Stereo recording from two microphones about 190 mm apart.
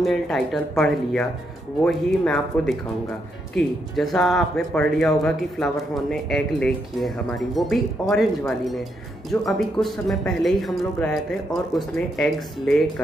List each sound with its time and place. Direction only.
0.0 s speech: centre (ahead or behind)